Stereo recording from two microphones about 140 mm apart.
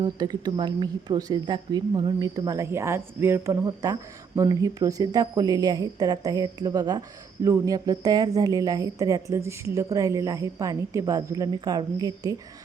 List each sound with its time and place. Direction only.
0.0 s speech: 30° right (ahead or behind)